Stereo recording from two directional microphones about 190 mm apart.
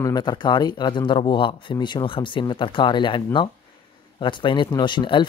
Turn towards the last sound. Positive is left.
turn(degrees=25)  # may be behind; listen again after turning